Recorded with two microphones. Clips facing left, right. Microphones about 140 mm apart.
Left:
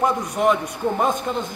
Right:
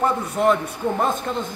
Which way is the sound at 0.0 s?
10° left (ahead or behind).